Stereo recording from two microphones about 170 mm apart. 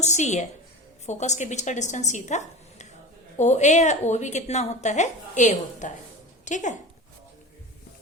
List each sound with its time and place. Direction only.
0.0 s a woman's voice: 40° left (ahead or behind)